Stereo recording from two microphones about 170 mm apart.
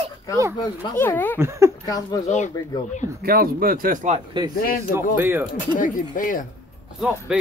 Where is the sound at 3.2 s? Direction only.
60° right (ahead or behind).